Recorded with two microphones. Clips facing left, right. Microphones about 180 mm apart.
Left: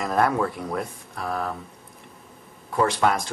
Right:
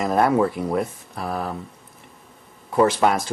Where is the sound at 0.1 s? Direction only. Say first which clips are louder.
Right 3 dB; 20° right (ahead or behind).